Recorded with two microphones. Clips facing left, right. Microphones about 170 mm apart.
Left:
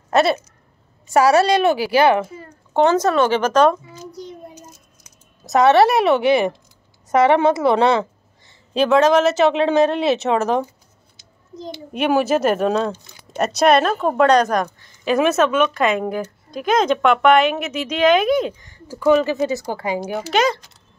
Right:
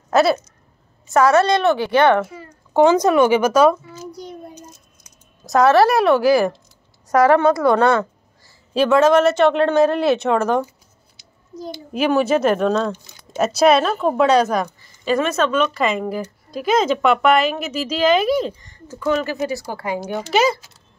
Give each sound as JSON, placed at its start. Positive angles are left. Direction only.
{"t": 0.1, "sound": "speech", "side_deg": 0}
{"t": 1.0, "sound": "a woman's voice", "side_deg": 10}
{"t": 2.7, "sound": "speech", "side_deg": -10}
{"t": 5.4, "sound": "speech", "side_deg": 0}
{"t": 11.9, "sound": "speech", "side_deg": 0}
{"t": 19.0, "sound": "speech", "side_deg": 20}
{"t": 20.1, "sound": "speech", "side_deg": 0}